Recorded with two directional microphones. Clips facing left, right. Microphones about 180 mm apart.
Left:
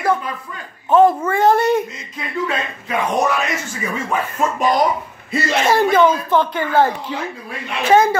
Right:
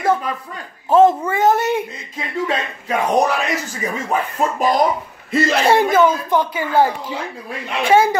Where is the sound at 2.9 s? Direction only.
35° right (ahead or behind).